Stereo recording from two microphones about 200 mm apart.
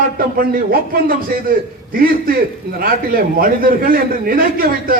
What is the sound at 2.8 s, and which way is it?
A man's voice, 45° right (ahead or behind).